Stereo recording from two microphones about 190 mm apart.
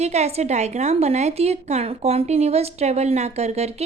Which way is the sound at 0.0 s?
35° right (ahead or behind).